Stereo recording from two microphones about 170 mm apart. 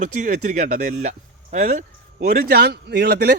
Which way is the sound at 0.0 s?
45° right (ahead or behind).